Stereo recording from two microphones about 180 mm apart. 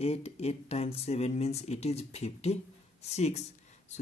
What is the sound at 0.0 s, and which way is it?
Speech, 35° left (ahead or behind).